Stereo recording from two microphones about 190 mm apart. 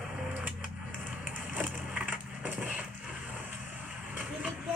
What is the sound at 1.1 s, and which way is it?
Crushing, 10° right (ahead or behind).